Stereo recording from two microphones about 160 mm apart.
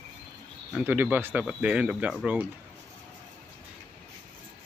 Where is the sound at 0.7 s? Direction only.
10° right (ahead or behind).